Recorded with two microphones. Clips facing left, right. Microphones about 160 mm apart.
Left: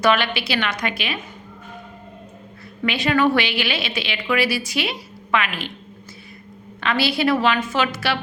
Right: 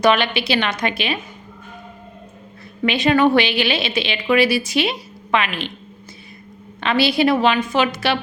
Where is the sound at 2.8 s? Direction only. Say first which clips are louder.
Right 3 dB; 20° right (ahead or behind).